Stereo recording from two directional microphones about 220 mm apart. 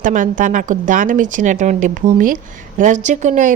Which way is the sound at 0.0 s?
35° right (ahead or behind).